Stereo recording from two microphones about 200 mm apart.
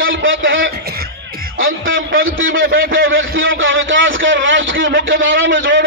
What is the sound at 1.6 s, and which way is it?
A man's voice, 75° right (ahead or behind).